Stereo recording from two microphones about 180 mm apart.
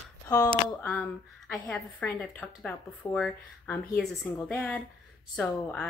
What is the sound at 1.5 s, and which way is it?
A woman's voice, 5° left (ahead or behind).